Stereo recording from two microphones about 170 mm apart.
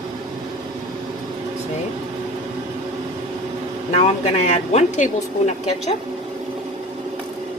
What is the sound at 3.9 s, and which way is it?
Speech, 40° left (ahead or behind).